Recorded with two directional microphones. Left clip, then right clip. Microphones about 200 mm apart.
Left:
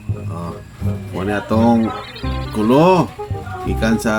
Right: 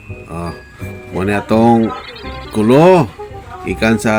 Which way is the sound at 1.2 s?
25° right (ahead or behind).